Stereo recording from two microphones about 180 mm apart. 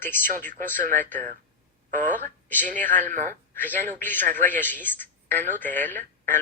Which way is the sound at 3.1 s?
45° right (ahead or behind).